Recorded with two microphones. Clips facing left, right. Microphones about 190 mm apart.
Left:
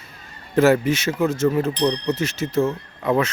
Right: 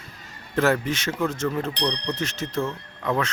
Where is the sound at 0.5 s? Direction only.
10° left (ahead or behind).